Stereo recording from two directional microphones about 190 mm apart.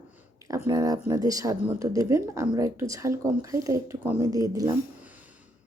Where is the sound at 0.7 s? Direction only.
20° right (ahead or behind).